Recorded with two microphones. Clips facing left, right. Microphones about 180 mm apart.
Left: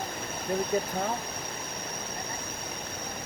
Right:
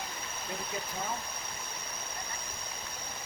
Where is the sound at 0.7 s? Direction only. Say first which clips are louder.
Left 12 dB; 45° left (ahead or behind).